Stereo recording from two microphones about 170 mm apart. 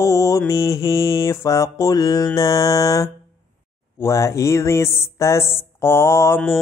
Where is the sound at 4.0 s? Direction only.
15° left (ahead or behind).